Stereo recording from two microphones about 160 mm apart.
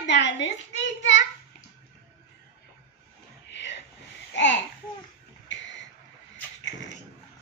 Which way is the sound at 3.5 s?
90° left.